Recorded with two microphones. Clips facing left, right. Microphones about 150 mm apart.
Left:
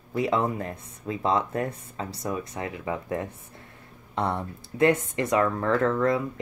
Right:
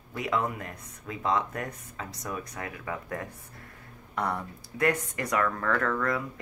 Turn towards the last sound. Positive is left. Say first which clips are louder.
# left 5 dB
turn(degrees=25)  # may be behind; listen again after turning